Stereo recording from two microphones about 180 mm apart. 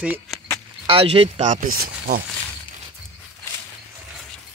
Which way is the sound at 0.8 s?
30° right (ahead or behind).